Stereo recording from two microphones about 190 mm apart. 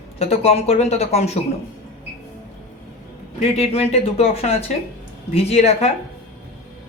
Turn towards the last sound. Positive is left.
turn(degrees=35)  # may be behind; listen again after turning